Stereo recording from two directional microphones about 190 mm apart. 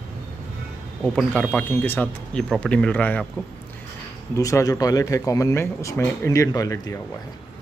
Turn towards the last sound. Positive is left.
turn(degrees=20)  # may be behind; listen again after turning